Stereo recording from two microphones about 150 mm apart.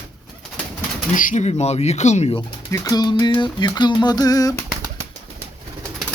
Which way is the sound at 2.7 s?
20° left (ahead or behind).